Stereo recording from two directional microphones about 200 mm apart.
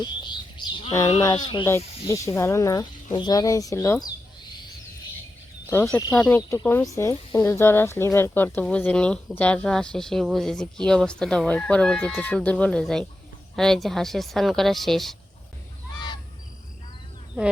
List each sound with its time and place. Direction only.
0.0 s bird: 20° left (ahead or behind)
1.2 s speech: 20° left (ahead or behind)
6.1 s speech: centre (ahead or behind)